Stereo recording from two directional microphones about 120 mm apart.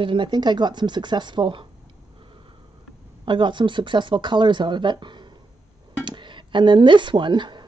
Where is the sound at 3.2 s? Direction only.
40° right (ahead or behind).